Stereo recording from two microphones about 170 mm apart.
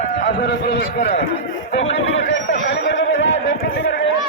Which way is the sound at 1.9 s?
90° left.